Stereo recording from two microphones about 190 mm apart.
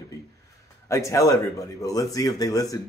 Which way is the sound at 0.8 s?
15° left (ahead or behind).